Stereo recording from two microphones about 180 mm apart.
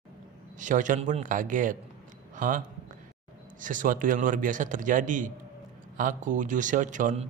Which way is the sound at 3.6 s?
45° right (ahead or behind).